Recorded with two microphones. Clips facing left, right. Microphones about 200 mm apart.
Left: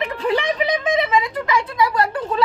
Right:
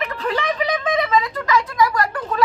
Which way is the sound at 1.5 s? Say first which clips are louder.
Right 3 dB; 30° left (ahead or behind).